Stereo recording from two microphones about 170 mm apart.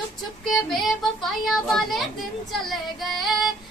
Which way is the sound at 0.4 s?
Centre (ahead or behind).